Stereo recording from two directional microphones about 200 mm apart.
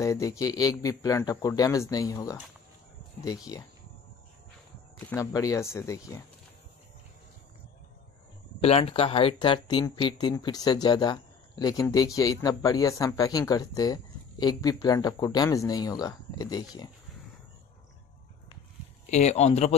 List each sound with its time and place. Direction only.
0.0 s speech: 15° left (ahead or behind)
5.1 s speech: 15° left (ahead or behind)
8.5 s speech: 30° left (ahead or behind)
19.0 s speech: 35° left (ahead or behind)